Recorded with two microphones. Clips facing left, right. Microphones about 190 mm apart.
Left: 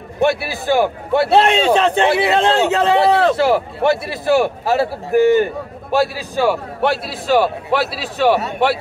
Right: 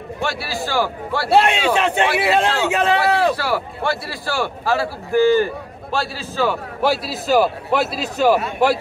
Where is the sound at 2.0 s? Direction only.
25° left (ahead or behind); by 6.6 s 10° left (ahead or behind).